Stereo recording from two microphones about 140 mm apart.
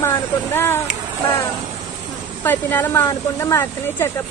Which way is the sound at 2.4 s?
15° left (ahead or behind).